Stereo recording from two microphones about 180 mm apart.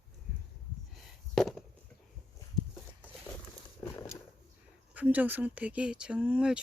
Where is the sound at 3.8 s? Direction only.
15° left (ahead or behind).